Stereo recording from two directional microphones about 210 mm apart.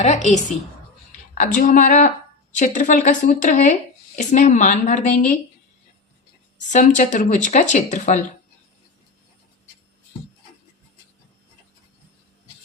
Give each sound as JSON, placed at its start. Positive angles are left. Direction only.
{"t": 0.0, "sound": "speech", "side_deg": 35}
{"t": 6.7, "sound": "speech", "side_deg": 35}